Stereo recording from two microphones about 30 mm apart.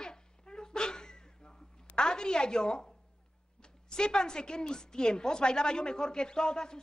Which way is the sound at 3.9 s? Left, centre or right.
Left.